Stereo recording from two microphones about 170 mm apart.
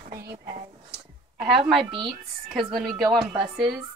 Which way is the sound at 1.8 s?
30° right (ahead or behind).